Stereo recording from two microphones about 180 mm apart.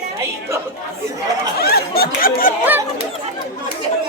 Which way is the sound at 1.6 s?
60° left (ahead or behind).